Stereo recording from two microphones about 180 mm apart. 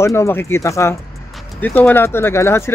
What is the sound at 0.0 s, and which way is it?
Speech, 15° left (ahead or behind).